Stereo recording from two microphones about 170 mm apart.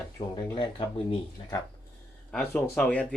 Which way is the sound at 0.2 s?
25° left (ahead or behind).